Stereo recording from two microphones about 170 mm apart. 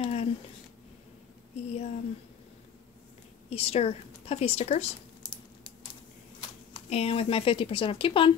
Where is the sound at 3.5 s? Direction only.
35° left (ahead or behind).